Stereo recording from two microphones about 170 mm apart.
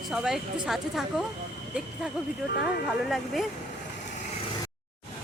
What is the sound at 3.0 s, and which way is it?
Speech, centre (ahead or behind).